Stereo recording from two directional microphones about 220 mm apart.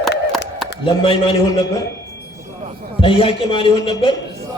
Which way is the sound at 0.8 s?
25° left (ahead or behind).